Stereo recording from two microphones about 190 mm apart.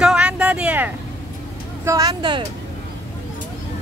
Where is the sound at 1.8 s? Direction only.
20° right (ahead or behind).